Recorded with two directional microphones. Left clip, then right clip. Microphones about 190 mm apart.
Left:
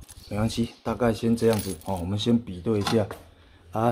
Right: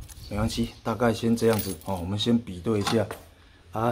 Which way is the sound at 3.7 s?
25° left (ahead or behind).